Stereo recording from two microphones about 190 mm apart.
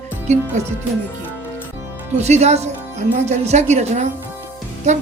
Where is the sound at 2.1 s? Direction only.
35° right (ahead or behind).